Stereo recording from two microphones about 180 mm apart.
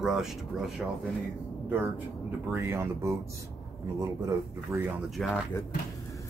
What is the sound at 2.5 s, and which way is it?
Speech, 15° right (ahead or behind).